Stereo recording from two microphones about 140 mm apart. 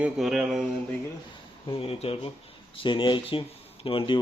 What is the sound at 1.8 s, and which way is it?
Speech, 40° left (ahead or behind).